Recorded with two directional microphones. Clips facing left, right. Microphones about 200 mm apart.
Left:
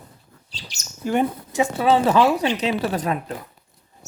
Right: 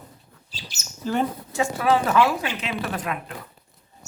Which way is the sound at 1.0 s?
15° left (ahead or behind).